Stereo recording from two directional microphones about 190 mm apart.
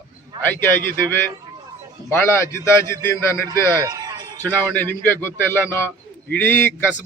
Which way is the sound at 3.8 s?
20° right (ahead or behind).